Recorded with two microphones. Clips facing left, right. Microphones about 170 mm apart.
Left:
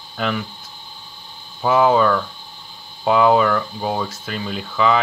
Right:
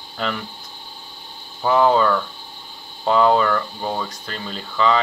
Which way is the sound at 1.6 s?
5° left (ahead or behind).